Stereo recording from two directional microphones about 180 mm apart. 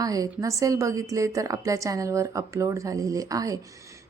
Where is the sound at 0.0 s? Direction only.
20° right (ahead or behind).